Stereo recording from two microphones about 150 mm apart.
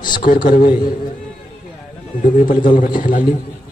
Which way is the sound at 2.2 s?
65° left (ahead or behind).